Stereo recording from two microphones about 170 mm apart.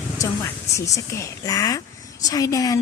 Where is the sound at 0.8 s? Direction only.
20° left (ahead or behind).